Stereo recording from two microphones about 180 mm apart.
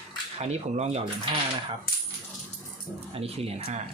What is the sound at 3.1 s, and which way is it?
Speech, 35° right (ahead or behind).